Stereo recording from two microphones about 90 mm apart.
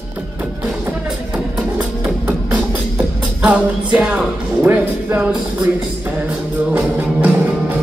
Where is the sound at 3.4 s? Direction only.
15° right (ahead or behind).